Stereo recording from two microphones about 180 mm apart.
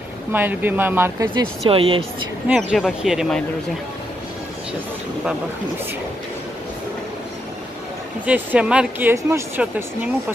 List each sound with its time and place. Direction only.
0.3 s speech: 10° right (ahead or behind)
1.3 s speech: 30° right (ahead or behind)
2.4 s speech: 5° right (ahead or behind)
8.3 s speech: 5° right (ahead or behind)